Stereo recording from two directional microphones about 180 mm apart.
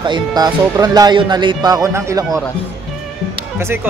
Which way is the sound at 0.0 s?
25° right (ahead or behind).